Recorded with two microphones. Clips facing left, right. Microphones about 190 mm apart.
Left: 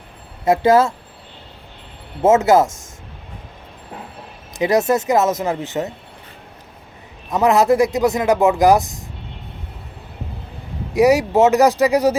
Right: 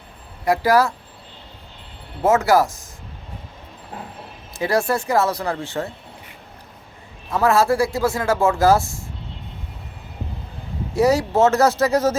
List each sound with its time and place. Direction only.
0.4 s speech: 25° left (ahead or behind)
2.2 s speech: 25° left (ahead or behind)
4.5 s speech: 20° left (ahead or behind)
7.3 s speech: 20° left (ahead or behind)
10.9 s speech: 15° left (ahead or behind)